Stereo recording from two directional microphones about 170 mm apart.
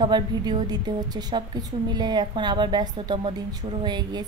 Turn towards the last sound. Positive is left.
turn(degrees=-25)  # may be behind; listen again after turning